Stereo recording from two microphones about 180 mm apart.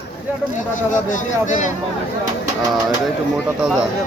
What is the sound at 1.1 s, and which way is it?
Speech, 45° left (ahead or behind).